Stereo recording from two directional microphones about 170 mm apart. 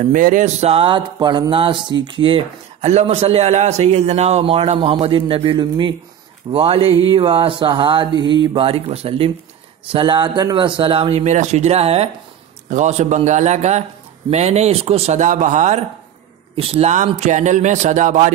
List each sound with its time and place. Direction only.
0.1 s a man's voice: 50° right (ahead or behind)
16.5 s speech: 35° right (ahead or behind)
16.9 s speech: 45° right (ahead or behind)